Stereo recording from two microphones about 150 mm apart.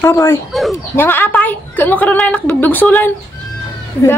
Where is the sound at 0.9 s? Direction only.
15° left (ahead or behind).